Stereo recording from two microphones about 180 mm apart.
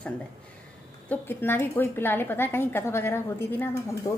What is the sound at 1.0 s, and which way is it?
A woman's voice, 10° left (ahead or behind).